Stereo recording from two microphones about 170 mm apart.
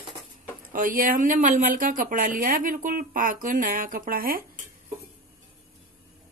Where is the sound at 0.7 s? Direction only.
55° right (ahead or behind).